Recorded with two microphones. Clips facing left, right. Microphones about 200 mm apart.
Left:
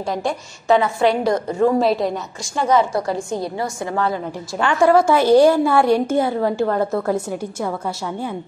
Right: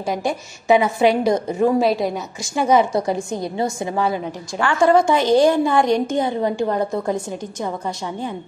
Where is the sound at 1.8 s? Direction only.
Centre (ahead or behind).